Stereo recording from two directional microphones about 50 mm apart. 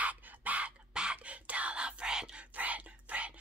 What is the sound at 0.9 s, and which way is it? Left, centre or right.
Whispering, right.